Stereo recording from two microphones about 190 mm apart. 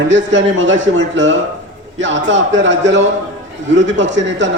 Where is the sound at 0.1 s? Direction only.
75° right (ahead or behind).